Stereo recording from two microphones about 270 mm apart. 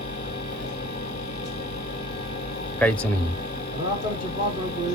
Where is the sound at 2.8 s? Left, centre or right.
Centre.